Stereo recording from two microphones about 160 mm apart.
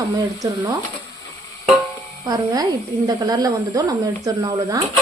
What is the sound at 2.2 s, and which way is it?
Speech, 25° right (ahead or behind).